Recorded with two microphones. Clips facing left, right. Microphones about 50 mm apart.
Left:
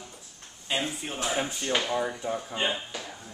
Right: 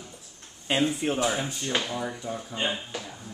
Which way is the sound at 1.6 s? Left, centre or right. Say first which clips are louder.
Left 2 dB; centre.